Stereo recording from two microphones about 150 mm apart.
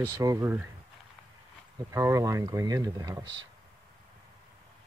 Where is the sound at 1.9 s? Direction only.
20° right (ahead or behind).